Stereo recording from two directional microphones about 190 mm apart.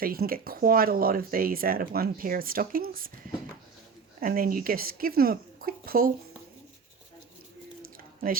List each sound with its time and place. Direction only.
0.0 s speech: 50° right (ahead or behind)
4.2 s speech: 50° right (ahead or behind)